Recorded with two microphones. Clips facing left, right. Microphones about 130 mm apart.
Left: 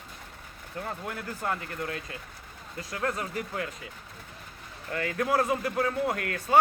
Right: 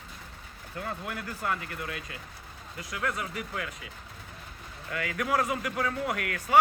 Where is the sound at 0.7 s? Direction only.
30° left (ahead or behind).